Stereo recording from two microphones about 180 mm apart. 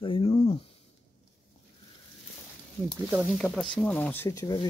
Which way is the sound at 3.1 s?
Centre (ahead or behind).